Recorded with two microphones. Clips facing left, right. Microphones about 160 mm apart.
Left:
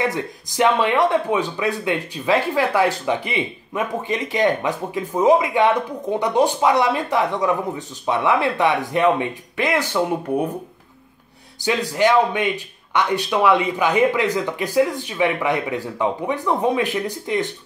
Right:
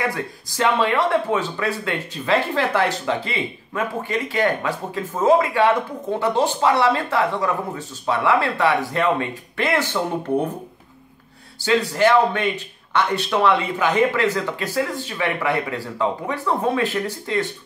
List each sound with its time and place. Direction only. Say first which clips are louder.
0.0 s speech: left 2 dB; 20° left (ahead or behind)
11.6 s speech: right 1 dB; 15° left (ahead or behind)